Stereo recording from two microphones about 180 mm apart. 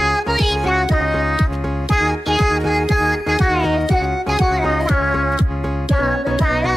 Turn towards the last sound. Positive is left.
turn(degrees=0)  # may be behind; listen again after turning